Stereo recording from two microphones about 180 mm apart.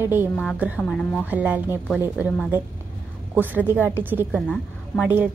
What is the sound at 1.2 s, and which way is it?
A woman's voice, 10° right (ahead or behind).